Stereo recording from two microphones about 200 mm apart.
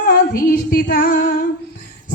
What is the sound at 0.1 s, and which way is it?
Female singing, 50° left (ahead or behind).